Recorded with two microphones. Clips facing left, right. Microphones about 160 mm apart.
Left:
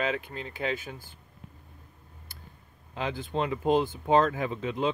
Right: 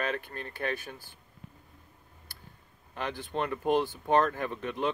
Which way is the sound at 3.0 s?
10° left (ahead or behind).